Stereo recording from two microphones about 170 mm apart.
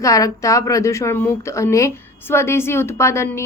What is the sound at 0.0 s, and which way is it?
Speech, 20° left (ahead or behind).